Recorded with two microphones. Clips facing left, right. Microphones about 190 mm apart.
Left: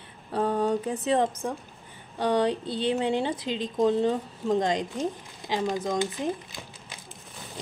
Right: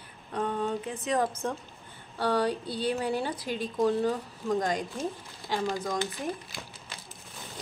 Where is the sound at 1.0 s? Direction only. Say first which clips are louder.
Left 2 dB; 25° left (ahead or behind).